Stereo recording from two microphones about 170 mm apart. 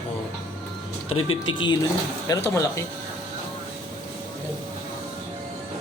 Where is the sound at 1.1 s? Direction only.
30° left (ahead or behind).